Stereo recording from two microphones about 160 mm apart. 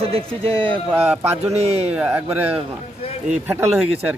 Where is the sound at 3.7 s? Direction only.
5° right (ahead or behind).